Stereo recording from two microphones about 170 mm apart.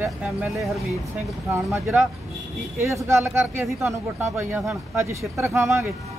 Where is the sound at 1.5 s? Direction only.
15° right (ahead or behind).